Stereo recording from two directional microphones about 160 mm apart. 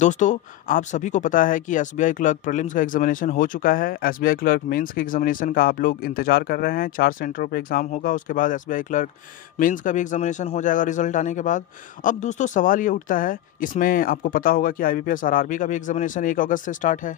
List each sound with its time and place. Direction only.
0.0 s speech: 50° left (ahead or behind)